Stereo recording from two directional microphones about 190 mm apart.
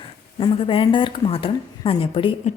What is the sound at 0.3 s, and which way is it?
Speech, 25° left (ahead or behind).